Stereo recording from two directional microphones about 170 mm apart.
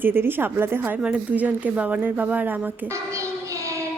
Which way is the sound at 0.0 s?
10° right (ahead or behind).